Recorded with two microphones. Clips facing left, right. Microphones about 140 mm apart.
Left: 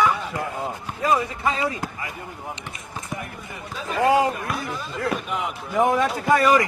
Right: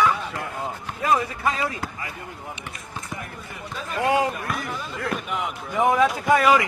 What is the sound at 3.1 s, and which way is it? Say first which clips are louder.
Chop: left 5 dB; centre (ahead or behind).